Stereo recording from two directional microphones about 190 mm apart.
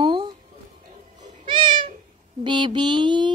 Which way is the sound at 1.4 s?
25° right (ahead or behind).